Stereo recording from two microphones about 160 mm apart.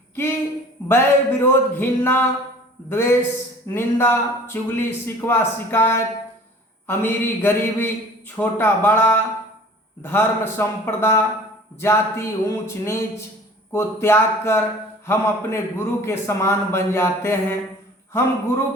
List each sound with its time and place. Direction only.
0.9 s a man's voice: 15° left (ahead or behind)